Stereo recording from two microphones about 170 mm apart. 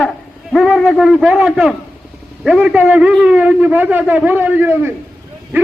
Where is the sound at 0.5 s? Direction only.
Centre (ahead or behind).